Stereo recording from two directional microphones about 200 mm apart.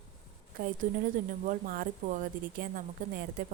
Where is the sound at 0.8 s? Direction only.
40° right (ahead or behind).